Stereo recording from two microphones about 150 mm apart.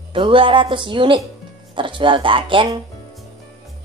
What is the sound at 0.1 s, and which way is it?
A woman's voice, 35° right (ahead or behind).